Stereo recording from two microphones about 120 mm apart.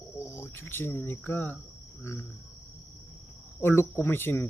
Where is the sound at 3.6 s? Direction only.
20° left (ahead or behind).